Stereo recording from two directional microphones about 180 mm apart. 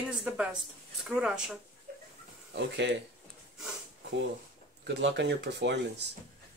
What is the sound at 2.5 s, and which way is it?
Speech, 75° right (ahead or behind).